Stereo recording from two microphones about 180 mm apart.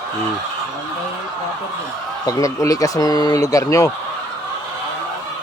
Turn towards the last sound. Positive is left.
turn(degrees=20)  # may be behind; listen again after turning